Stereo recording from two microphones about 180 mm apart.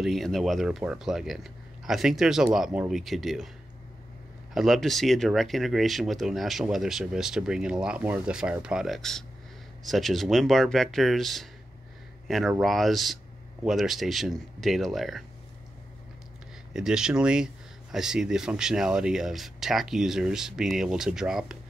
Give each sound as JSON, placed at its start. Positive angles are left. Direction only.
{"t": 0.0, "sound": "speech", "side_deg": 0}
{"t": 4.6, "sound": "speech", "side_deg": 0}
{"t": 16.7, "sound": "speech", "side_deg": -5}